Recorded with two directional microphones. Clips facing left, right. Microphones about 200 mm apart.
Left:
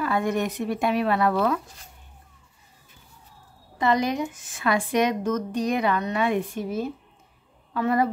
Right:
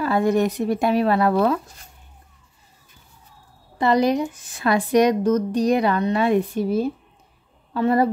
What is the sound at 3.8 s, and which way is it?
A woman's voice, 35° right (ahead or behind).